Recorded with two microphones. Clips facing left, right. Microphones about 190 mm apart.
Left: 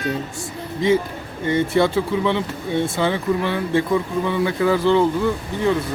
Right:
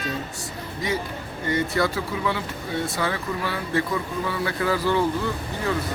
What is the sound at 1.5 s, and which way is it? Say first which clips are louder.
Speech: left 6 dB; 25° left (ahead or behind).